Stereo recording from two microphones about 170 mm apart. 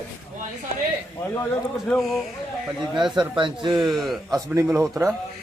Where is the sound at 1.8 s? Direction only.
Centre (ahead or behind).